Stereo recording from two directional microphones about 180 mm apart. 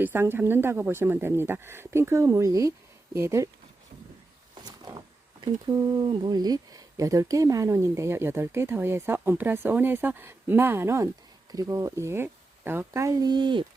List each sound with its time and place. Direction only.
0.0 s speech: 10° right (ahead or behind)
4.6 s a sound: 25° right (ahead or behind)
5.6 s speech: 25° right (ahead or behind)